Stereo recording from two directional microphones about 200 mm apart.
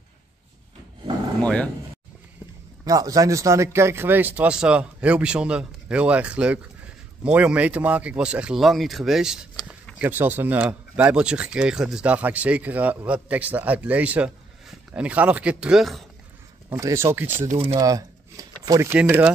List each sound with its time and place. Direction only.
1.4 s speech: 5° left (ahead or behind)
2.8 s speech: 15° right (ahead or behind); by 16.1 s centre (ahead or behind)
16.7 s speech: 15° right (ahead or behind)
17.3 s speech: 35° right (ahead or behind)
17.7 s speech: 15° right (ahead or behind)